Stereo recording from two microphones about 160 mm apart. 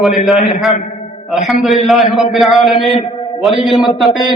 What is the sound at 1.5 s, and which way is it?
A man's voice, centre (ahead or behind).